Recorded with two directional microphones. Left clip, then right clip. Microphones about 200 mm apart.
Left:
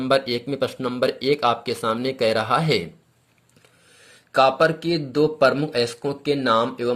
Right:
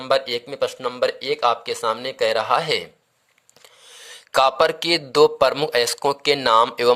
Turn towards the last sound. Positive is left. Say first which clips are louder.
# right 5 dB
turn(degrees=-40)  # may be behind; listen again after turning